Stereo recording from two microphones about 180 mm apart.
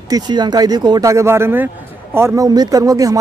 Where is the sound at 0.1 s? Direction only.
25° right (ahead or behind).